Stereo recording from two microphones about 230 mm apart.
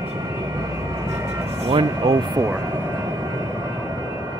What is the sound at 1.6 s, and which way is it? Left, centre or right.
Speech, right.